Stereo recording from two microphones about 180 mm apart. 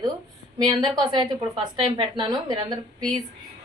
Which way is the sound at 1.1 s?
25° right (ahead or behind).